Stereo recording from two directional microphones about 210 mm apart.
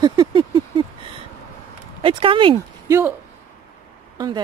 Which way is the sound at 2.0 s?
25° right (ahead or behind).